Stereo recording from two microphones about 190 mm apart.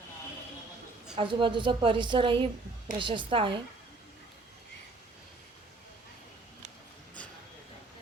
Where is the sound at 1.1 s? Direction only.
25° right (ahead or behind).